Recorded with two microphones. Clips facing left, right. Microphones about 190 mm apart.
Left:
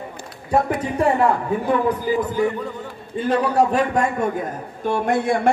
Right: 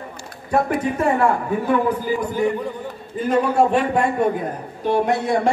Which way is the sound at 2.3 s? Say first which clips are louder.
Right 1 dB; 20° right (ahead or behind).